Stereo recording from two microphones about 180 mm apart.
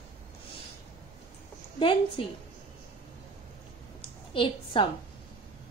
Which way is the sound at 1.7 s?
30° left (ahead or behind).